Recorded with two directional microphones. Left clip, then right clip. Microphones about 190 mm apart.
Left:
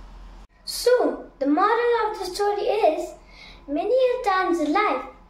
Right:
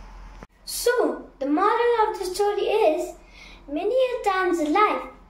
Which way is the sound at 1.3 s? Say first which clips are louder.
Left 1 dB; 20° left (ahead or behind).